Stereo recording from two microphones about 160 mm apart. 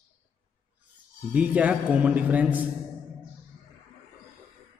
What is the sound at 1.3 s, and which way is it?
A man's voice, 10° right (ahead or behind).